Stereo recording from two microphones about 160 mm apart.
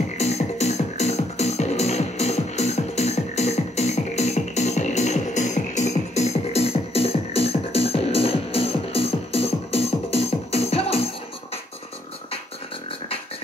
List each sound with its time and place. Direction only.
0.2 s music: 45° left (ahead or behind)